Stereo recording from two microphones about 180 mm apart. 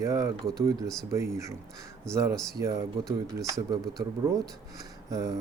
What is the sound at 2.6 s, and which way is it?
Speech, 20° right (ahead or behind).